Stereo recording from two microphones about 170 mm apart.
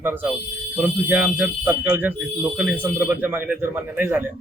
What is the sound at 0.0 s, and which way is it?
Speech, 10° right (ahead or behind).